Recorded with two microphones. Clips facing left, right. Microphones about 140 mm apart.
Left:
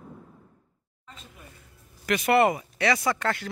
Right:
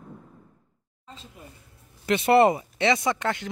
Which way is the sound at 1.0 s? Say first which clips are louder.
Right 3 dB; 30° right (ahead or behind).